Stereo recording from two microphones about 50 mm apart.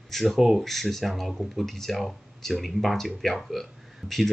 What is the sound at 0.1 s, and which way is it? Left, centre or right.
Speech, centre.